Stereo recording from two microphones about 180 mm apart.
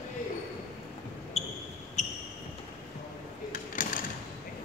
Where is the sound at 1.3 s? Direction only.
35° left (ahead or behind).